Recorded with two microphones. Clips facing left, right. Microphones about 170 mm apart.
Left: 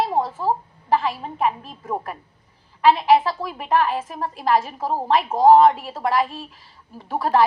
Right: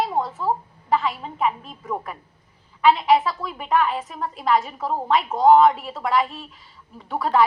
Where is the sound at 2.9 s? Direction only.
25° left (ahead or behind).